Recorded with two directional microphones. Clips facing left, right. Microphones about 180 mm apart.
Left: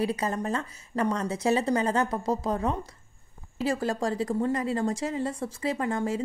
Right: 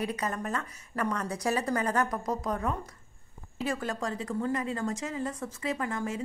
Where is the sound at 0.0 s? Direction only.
30° left (ahead or behind).